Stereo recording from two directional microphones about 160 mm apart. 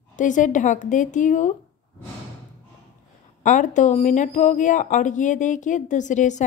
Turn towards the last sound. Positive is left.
turn(degrees=50)  # may be behind; listen again after turning